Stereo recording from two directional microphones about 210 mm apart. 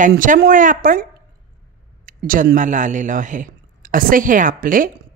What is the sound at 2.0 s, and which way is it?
Speech, 40° right (ahead or behind).